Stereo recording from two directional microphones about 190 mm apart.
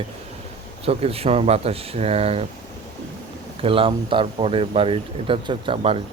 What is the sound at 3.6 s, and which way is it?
Speech, 30° right (ahead or behind).